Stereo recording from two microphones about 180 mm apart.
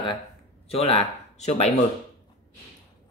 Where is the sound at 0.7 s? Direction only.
35° left (ahead or behind).